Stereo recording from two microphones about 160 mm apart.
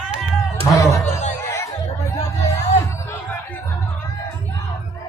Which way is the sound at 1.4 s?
15° left (ahead or behind).